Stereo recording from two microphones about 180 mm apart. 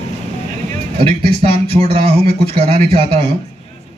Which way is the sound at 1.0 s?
30° right (ahead or behind).